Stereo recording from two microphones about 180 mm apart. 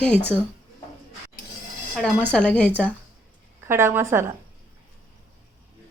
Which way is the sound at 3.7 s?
15° right (ahead or behind).